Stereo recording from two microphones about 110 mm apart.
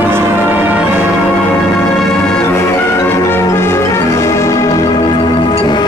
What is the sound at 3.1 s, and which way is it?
Music, 20° left (ahead or behind).